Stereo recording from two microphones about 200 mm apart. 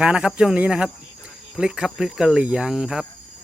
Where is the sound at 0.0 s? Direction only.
5° right (ahead or behind).